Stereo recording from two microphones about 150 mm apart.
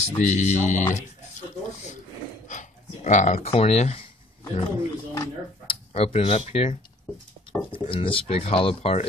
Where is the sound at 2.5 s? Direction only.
55° left (ahead or behind).